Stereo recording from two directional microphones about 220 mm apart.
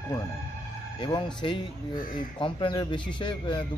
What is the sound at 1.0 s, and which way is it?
Speech, 20° left (ahead or behind).